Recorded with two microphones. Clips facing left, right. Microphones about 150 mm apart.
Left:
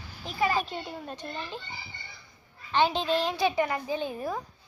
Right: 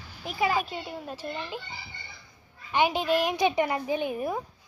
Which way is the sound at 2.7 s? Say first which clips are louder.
Right 1 dB; 10° right (ahead or behind).